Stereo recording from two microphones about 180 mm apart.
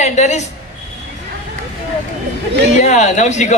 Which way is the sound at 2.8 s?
40° left (ahead or behind).